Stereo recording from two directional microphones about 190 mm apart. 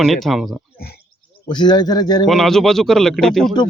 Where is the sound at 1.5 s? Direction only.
20° left (ahead or behind).